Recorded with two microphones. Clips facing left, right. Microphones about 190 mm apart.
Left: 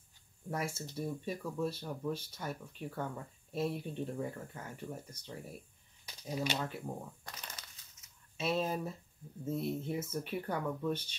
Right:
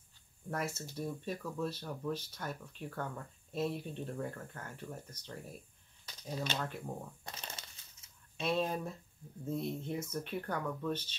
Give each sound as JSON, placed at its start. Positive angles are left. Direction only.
{"t": 0.5, "sound": "speech", "side_deg": 10}
{"t": 7.2, "sound": "crushing", "side_deg": -25}
{"t": 8.4, "sound": "speech", "side_deg": 5}